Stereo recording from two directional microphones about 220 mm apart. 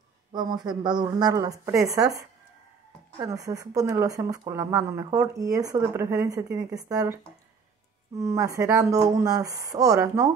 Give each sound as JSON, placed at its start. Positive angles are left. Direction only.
{"t": 0.3, "sound": "speech", "side_deg": -20}
{"t": 8.2, "sound": "speech", "side_deg": -15}